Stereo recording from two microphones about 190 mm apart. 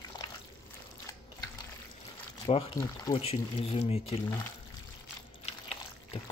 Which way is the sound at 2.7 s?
15° left (ahead or behind).